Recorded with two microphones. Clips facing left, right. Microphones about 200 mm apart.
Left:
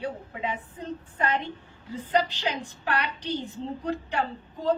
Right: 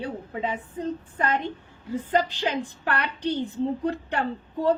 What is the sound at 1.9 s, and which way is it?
A woman's voice, 50° right (ahead or behind).